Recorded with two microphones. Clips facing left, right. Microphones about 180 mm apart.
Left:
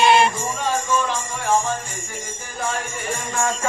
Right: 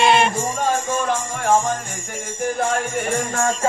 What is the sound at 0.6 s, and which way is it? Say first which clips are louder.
Jingle bell: even; 50° right (ahead or behind).